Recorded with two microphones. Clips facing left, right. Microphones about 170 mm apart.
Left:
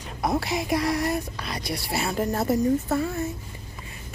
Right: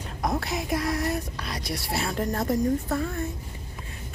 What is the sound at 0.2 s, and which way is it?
Speech, 5° left (ahead or behind).